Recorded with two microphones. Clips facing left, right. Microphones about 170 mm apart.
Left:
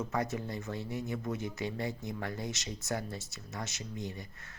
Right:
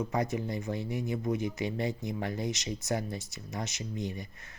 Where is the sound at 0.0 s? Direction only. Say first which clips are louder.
Right 3 dB; 15° right (ahead or behind).